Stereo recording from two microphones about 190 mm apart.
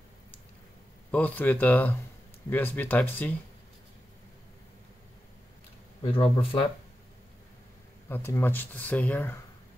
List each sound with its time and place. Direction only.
1.1 s speech: 10° left (ahead or behind)
6.0 s speech: 30° left (ahead or behind)
8.1 s speech: 10° left (ahead or behind)